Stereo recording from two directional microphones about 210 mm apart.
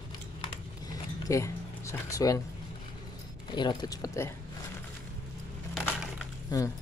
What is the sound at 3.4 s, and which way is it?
Speech, 20° left (ahead or behind).